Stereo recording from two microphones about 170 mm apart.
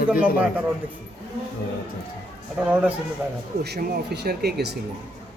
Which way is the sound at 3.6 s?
75° right (ahead or behind).